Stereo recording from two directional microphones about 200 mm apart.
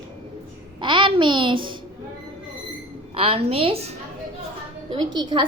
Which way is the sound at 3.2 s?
30° right (ahead or behind).